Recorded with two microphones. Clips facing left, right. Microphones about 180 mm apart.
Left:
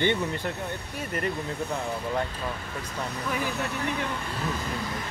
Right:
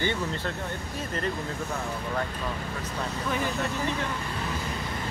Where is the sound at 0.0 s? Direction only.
20° left (ahead or behind).